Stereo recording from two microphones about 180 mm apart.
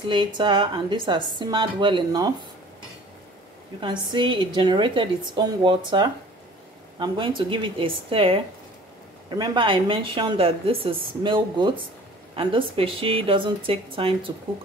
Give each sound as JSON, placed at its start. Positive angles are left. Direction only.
{"t": 0.1, "sound": "a woman's voice", "side_deg": -25}
{"t": 3.8, "sound": "a woman's voice", "side_deg": -25}
{"t": 9.4, "sound": "a woman's voice", "side_deg": -25}